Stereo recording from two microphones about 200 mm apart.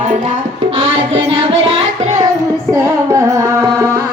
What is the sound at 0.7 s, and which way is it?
Music, 30° right (ahead or behind).